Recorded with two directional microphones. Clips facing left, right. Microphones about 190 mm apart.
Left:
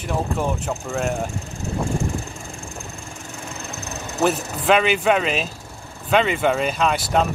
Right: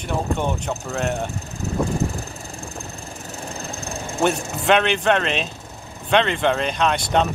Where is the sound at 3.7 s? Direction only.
30° right (ahead or behind).